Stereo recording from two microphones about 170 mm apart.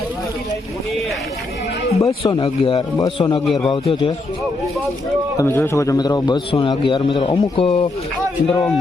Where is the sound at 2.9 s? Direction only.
20° left (ahead or behind).